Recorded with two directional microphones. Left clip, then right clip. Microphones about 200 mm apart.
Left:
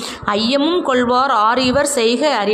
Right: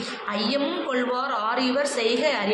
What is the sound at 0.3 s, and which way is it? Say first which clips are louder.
A woman's voice: left 10 dB; 55° left (ahead or behind).